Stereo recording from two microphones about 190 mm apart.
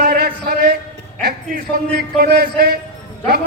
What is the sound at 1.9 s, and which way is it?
Speech, 55° right (ahead or behind).